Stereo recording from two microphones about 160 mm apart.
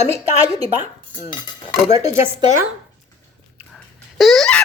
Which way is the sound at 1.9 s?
20° right (ahead or behind).